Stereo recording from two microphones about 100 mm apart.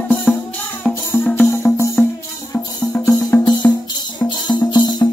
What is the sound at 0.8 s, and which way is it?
Music, 10° left (ahead or behind).